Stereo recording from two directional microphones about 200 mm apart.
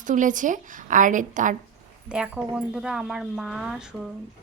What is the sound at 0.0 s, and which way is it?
A woman's voice, 40° right (ahead or behind).